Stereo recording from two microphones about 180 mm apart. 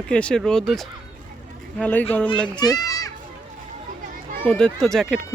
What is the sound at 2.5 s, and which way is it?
Children playing, 20° left (ahead or behind).